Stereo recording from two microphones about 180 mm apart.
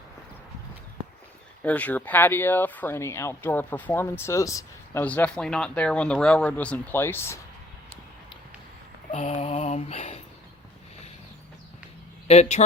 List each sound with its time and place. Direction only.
1.6 s speech: 10° left (ahead or behind)
9.1 s mantra: 35° left (ahead or behind)
12.3 s speech: 40° left (ahead or behind)